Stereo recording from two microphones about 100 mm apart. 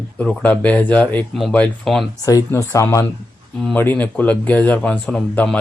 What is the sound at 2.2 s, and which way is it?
Speech, 35° left (ahead or behind).